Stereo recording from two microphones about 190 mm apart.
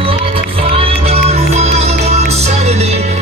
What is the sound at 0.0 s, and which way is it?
Music, 30° right (ahead or behind).